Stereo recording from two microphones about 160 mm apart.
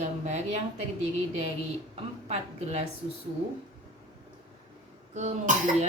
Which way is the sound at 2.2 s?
40° right (ahead or behind).